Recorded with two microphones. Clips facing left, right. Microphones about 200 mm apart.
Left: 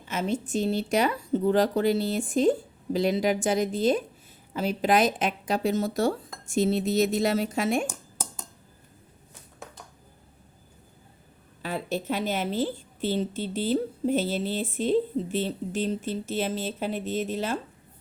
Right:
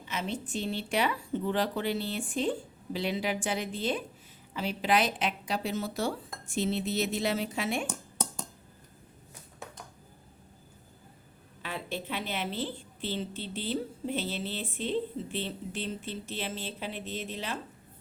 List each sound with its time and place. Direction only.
0.1 s a woman's voice: 45° left (ahead or behind)
11.6 s a woman's voice: 40° left (ahead or behind)